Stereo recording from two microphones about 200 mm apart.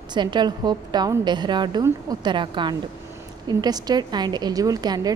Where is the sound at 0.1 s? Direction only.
20° right (ahead or behind).